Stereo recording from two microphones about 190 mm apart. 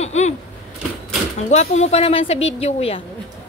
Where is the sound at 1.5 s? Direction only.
35° left (ahead or behind).